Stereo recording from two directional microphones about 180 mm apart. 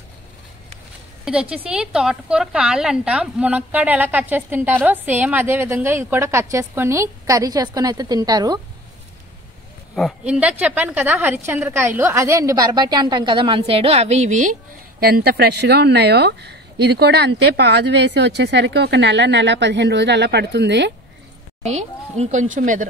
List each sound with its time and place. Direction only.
1.2 s a woman's voice: 5° right (ahead or behind); by 8.5 s 20° right (ahead or behind)
9.9 s a woman's voice: centre (ahead or behind); by 20.9 s 70° right (ahead or behind)
21.6 s speech: 40° right (ahead or behind)